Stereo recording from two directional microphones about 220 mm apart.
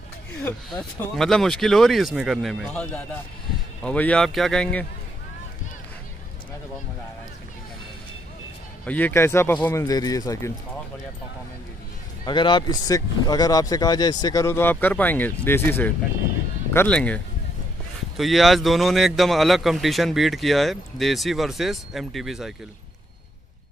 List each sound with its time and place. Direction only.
0.4 s a man's voice: 5° left (ahead or behind)
8.8 s speech: 10° left (ahead or behind)
12.3 s a man's voice: 20° left (ahead or behind); by 22.5 s centre (ahead or behind)